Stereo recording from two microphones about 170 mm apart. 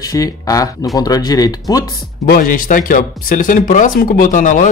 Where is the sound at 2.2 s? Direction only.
55° left (ahead or behind).